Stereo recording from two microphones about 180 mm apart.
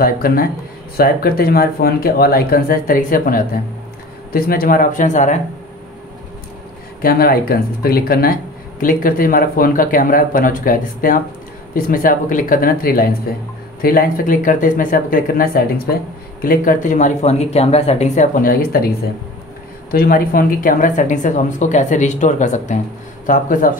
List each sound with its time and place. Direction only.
0.0 s speech: 55° left (ahead or behind)
7.0 s speech: 55° left (ahead or behind)
19.9 s speech: 55° left (ahead or behind)